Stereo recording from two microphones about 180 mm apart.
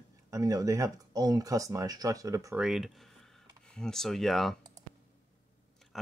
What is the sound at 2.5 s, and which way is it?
Speech, centre (ahead or behind).